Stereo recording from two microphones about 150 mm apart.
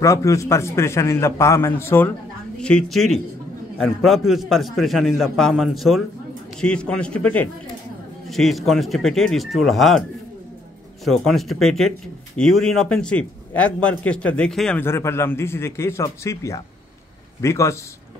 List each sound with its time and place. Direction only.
0.0 s a man's voice: 20° left (ahead or behind)
2.6 s a man's voice: 5° left (ahead or behind)
11.1 s a man's voice: centre (ahead or behind)
14.8 s a man's voice: 15° left (ahead or behind)